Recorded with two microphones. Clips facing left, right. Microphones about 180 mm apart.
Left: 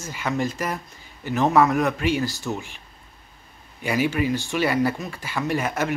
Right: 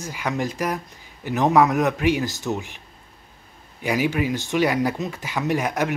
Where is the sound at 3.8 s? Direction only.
15° right (ahead or behind).